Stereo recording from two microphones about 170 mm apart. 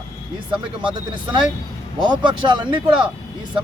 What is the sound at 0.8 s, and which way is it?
Speech, 25° right (ahead or behind).